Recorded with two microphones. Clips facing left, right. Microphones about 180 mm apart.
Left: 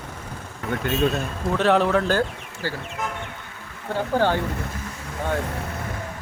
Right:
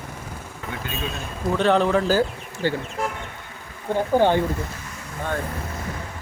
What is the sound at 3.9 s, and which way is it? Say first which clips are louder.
Speech: right 3 dB; 15° right (ahead or behind).